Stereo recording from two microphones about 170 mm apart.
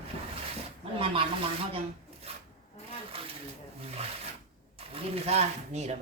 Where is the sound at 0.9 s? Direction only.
35° right (ahead or behind).